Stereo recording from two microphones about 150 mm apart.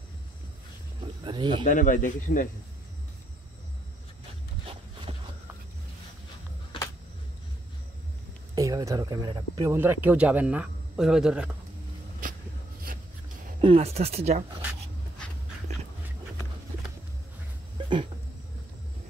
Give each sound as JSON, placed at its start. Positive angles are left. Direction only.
{"t": 1.2, "sound": "speech", "side_deg": -30}
{"t": 1.6, "sound": "speech", "side_deg": 65}
{"t": 8.5, "sound": "speech", "side_deg": -20}
{"t": 9.7, "sound": "speech", "side_deg": -15}
{"t": 13.6, "sound": "speech", "side_deg": -40}
{"t": 17.7, "sound": "a sound", "side_deg": -30}